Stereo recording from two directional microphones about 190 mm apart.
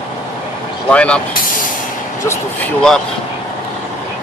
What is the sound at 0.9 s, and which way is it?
Speech, 5° left (ahead or behind).